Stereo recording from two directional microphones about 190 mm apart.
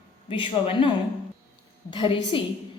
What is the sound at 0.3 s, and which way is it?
Speech, 25° left (ahead or behind).